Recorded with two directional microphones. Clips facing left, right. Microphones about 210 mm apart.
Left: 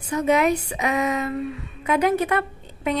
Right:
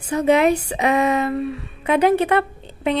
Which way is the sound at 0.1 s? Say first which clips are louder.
Right 4 dB; 30° right (ahead or behind).